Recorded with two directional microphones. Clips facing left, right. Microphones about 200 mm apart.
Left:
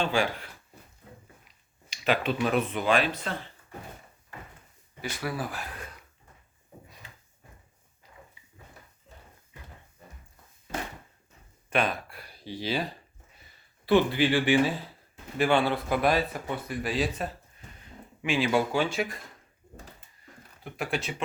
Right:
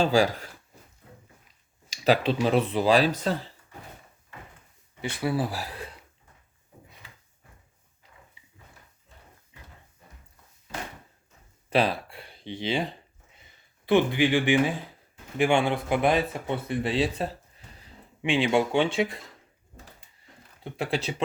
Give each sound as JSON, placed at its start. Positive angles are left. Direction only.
{"t": 0.0, "sound": "speech", "side_deg": -35}
{"t": 2.0, "sound": "speech", "side_deg": -30}
{"t": 4.9, "sound": "speech", "side_deg": -25}
{"t": 11.7, "sound": "a sound", "side_deg": -30}
{"t": 15.4, "sound": "speech", "side_deg": -15}
{"t": 20.7, "sound": "speech", "side_deg": -30}